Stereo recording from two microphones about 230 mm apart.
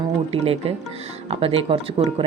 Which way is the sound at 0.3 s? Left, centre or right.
Right.